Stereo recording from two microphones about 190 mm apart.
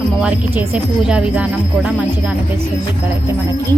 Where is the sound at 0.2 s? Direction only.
10° right (ahead or behind).